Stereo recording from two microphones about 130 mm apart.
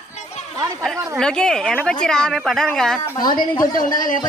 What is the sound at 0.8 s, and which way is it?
A woman's voice, 5° left (ahead or behind).